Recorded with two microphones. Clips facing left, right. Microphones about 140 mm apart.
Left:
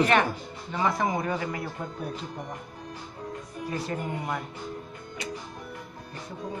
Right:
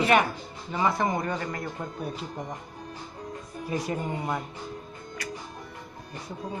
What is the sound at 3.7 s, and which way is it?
Speech, 15° right (ahead or behind).